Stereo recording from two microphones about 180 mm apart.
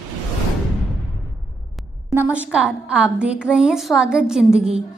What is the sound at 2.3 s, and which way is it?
A woman's voice, 5° right (ahead or behind).